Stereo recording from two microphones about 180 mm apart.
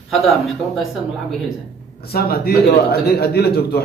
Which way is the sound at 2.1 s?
60° left (ahead or behind).